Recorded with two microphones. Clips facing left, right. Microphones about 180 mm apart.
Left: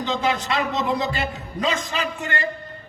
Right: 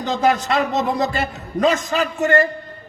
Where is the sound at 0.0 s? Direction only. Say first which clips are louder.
Right 5 dB; 50° right (ahead or behind).